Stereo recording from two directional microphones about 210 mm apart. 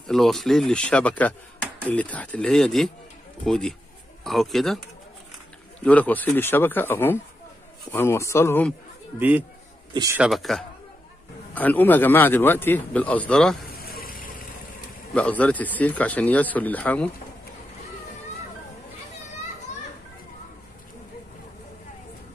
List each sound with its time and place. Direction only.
0.0 s speech: centre (ahead or behind)
5.8 s speech: 5° left (ahead or behind)
9.9 s a man's voice: 15° right (ahead or behind)
10.2 s speech: centre (ahead or behind)
13.7 s a sound: 45° left (ahead or behind)
15.1 s speech: 5° left (ahead or behind)